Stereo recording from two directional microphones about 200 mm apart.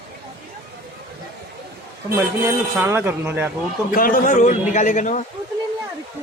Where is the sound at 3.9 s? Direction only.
45° left (ahead or behind).